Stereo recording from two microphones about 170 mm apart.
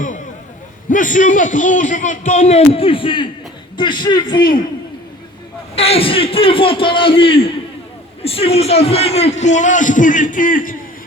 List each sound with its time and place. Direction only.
0.9 s a man's voice: 50° left (ahead or behind); by 4.4 s 25° left (ahead or behind)
5.7 s a man's voice: 35° left (ahead or behind); by 10.8 s 55° left (ahead or behind)